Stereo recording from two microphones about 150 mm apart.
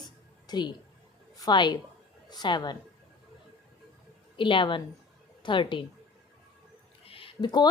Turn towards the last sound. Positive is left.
turn(degrees=30)  # may be behind; listen again after turning